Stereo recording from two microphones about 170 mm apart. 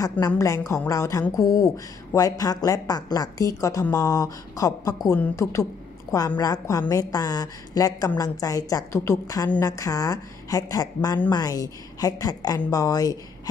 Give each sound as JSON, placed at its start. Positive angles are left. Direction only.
{"t": 0.4, "sound": "speech", "side_deg": 20}